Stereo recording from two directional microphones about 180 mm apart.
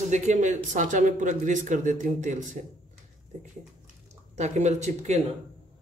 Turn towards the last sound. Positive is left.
turn(degrees=-40)  # may be behind; listen again after turning